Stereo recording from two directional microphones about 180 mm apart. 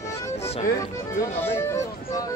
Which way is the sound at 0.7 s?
15° left (ahead or behind).